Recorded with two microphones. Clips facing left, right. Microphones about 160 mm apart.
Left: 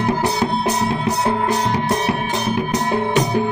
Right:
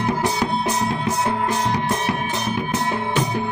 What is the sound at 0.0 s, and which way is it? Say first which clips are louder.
Music: left 3 dB; 35° left (ahead or behind).